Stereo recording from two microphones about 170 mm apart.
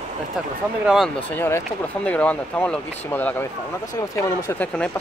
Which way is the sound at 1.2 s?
15° left (ahead or behind).